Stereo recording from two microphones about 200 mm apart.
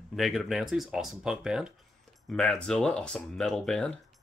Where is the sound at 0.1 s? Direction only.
Centre (ahead or behind).